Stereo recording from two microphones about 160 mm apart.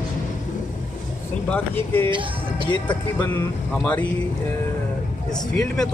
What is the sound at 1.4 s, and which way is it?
Speech, 10° left (ahead or behind).